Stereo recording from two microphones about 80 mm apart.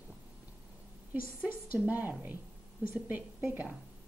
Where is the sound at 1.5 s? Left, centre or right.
Right.